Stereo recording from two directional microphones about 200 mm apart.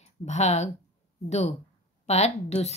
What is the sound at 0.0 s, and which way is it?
Speech, 35° left (ahead or behind).